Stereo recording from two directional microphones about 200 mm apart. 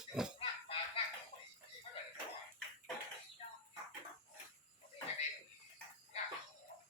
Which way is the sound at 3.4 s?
30° left (ahead or behind).